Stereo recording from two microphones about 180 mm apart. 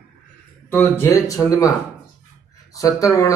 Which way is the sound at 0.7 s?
10° left (ahead or behind).